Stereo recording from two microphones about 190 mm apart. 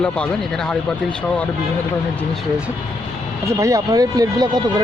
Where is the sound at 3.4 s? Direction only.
15° right (ahead or behind).